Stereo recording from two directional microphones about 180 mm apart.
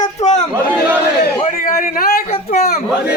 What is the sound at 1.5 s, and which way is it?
A man's voice, 50° left (ahead or behind).